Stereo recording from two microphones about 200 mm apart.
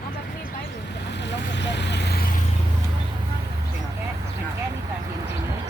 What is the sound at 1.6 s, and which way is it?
Vehicle, 60° left (ahead or behind).